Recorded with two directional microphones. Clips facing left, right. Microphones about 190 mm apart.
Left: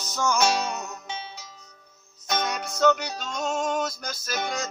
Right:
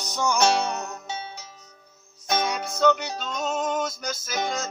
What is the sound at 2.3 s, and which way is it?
Music, 10° right (ahead or behind).